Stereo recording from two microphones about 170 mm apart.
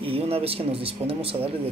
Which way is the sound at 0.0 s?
35° right (ahead or behind).